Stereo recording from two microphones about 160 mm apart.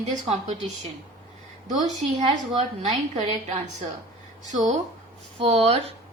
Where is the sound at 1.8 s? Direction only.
45° right (ahead or behind).